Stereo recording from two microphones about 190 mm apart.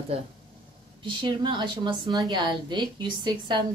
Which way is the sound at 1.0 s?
25° right (ahead or behind).